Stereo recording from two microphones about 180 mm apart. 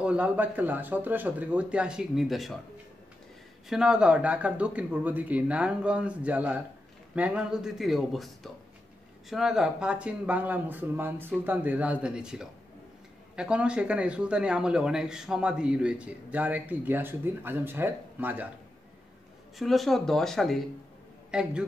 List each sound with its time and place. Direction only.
0.0 s speech: 5° right (ahead or behind)
3.6 s speech: 5° right (ahead or behind)
9.3 s speech: centre (ahead or behind)
19.6 s a man's voice: centre (ahead or behind)